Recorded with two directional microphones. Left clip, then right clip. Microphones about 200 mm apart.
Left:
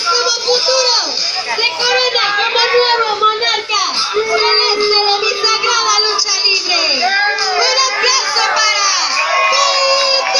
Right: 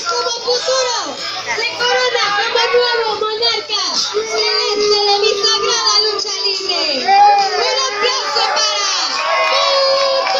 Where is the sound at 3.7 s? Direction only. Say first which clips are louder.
Left 2 dB; 5° left (ahead or behind).